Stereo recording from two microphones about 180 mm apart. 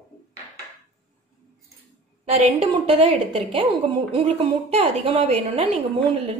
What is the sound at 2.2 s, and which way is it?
A woman's voice, 35° right (ahead or behind).